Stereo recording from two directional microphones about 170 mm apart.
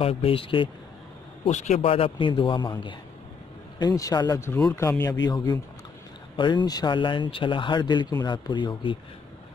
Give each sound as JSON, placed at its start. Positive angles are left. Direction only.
{"t": 0.0, "sound": "a man's voice", "side_deg": 35}
{"t": 1.4, "sound": "a man's voice", "side_deg": 45}